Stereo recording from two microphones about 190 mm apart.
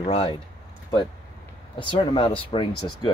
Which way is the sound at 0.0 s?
30° left (ahead or behind).